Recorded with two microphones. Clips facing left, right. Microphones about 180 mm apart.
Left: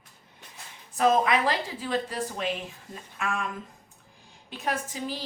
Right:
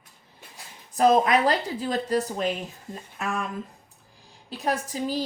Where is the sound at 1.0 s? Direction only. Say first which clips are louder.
Right 3 dB; 40° right (ahead or behind).